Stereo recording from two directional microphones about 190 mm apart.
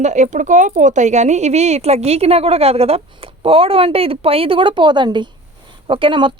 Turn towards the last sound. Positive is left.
turn(degrees=-25)  # may be behind; listen again after turning